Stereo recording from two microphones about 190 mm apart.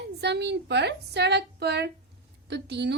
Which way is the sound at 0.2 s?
60° right (ahead or behind).